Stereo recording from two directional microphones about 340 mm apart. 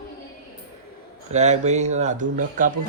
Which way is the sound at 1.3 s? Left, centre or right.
Centre.